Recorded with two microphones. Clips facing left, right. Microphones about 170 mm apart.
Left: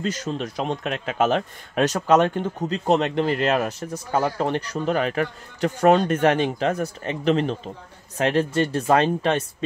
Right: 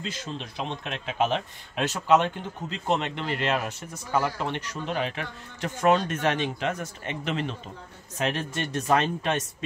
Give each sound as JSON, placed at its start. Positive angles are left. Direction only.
{"t": 0.0, "sound": "speech", "side_deg": 45}